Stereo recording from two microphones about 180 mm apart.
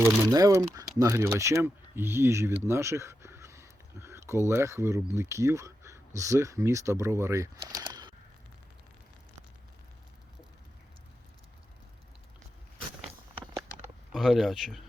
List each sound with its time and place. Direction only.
0.3 s speech: 20° right (ahead or behind)
7.7 s a sound: 20° right (ahead or behind)
14.1 s speech: centre (ahead or behind)